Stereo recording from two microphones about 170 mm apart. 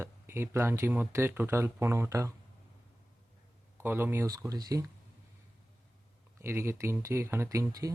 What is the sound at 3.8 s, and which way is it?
Speech, 10° right (ahead or behind).